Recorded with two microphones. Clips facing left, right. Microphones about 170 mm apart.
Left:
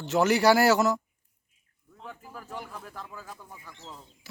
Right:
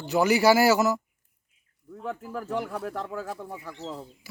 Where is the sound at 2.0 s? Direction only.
65° right (ahead or behind).